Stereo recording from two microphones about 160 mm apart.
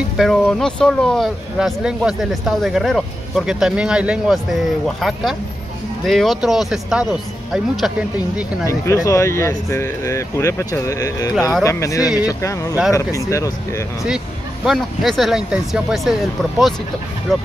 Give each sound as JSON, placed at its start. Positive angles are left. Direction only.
{"t": 0.2, "sound": "speech", "side_deg": 5}
{"t": 8.6, "sound": "speech", "side_deg": 20}
{"t": 14.7, "sound": "speech", "side_deg": 0}